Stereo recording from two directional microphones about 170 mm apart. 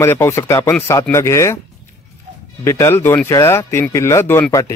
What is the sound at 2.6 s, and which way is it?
Speech, 15° left (ahead or behind).